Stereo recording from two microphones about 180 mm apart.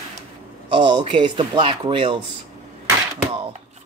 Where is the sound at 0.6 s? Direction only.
25° right (ahead or behind).